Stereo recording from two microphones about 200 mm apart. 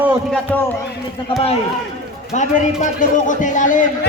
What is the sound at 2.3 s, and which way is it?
A man's voice, 40° left (ahead or behind).